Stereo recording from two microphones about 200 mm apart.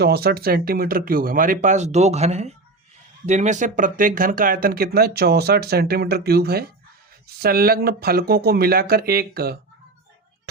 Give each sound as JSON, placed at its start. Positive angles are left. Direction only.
{"t": 0.0, "sound": "speech", "side_deg": -50}